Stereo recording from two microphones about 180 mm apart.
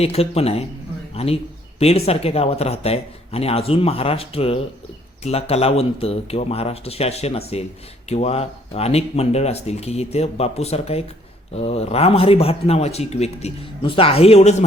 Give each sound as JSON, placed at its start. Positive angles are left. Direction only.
{"t": 0.0, "sound": "speech", "side_deg": 35}